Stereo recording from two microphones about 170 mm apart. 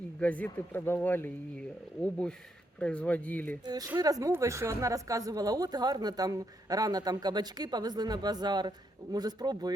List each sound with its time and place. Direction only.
0.2 s speech: 10° left (ahead or behind)
3.7 s a woman's voice: 20° right (ahead or behind)